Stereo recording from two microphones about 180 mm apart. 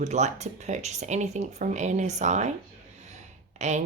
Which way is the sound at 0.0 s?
40° right (ahead or behind).